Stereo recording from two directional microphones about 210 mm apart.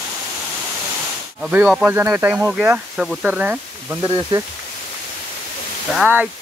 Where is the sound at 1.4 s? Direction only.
5° right (ahead or behind).